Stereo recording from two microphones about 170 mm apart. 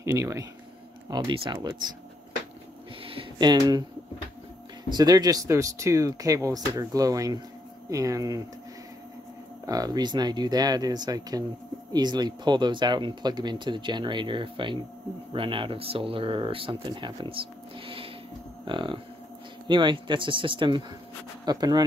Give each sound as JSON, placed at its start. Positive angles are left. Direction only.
{"t": 0.0, "sound": "speech", "side_deg": -20}
{"t": 1.1, "sound": "speech", "side_deg": -30}
{"t": 3.0, "sound": "a sound", "side_deg": -30}
{"t": 4.8, "sound": "speech", "side_deg": -25}
{"t": 9.7, "sound": "speech", "side_deg": -20}